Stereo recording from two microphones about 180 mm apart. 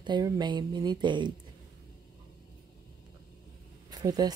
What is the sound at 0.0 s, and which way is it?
Speech, 25° right (ahead or behind).